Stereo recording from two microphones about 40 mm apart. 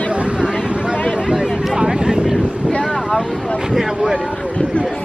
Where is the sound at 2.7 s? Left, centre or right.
Left.